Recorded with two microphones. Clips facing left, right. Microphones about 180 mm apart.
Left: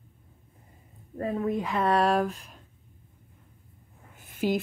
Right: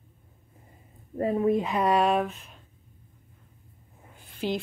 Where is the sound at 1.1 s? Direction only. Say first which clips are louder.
Right 5 dB; 20° right (ahead or behind).